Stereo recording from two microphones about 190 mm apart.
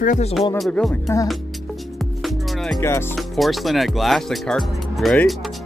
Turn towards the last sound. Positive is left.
turn(degrees=0)  # may be behind; listen again after turning